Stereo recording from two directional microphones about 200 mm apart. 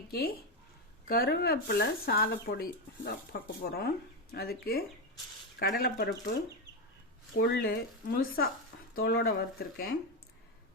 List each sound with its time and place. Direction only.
0.1 s speech: 50° left (ahead or behind)
7.3 s speech: 50° left (ahead or behind)